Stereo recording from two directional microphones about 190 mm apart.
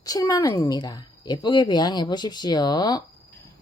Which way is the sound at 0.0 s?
20° left (ahead or behind).